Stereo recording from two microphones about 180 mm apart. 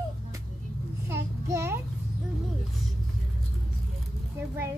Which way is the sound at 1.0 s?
15° right (ahead or behind).